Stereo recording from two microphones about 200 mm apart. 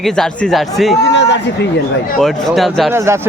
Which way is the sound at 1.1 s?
60° left (ahead or behind).